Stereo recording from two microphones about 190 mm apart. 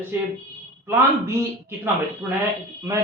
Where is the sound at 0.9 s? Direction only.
15° right (ahead or behind).